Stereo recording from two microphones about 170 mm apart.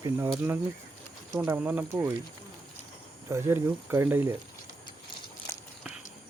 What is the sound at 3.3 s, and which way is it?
Speech, 15° right (ahead or behind).